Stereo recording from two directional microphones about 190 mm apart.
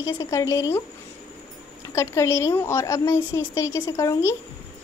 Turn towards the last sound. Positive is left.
turn(degrees=15)  # may be behind; listen again after turning